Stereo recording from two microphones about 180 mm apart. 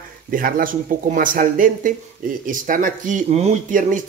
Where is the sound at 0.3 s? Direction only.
50° right (ahead or behind).